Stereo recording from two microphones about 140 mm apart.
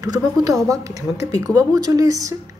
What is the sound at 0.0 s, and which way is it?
Speech, 25° right (ahead or behind).